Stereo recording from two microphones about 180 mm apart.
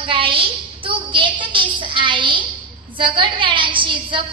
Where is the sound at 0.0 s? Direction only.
30° right (ahead or behind).